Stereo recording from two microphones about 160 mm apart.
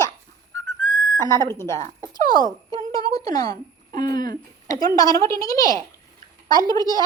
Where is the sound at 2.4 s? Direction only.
25° right (ahead or behind).